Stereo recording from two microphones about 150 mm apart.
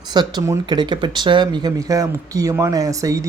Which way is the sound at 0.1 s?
30° right (ahead or behind).